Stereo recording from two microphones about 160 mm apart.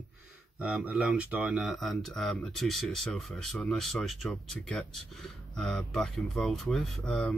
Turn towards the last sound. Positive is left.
turn(degrees=5)  # may be behind; listen again after turning